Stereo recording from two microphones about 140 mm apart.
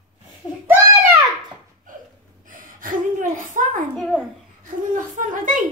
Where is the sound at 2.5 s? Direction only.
75° right (ahead or behind).